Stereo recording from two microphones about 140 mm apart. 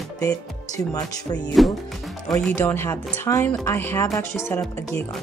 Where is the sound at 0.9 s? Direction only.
30° left (ahead or behind).